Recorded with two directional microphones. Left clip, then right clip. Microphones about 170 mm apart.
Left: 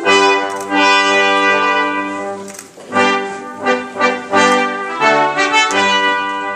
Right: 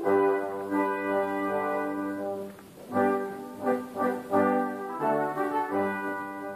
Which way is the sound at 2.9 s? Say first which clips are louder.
Left 13 dB; 30° left (ahead or behind).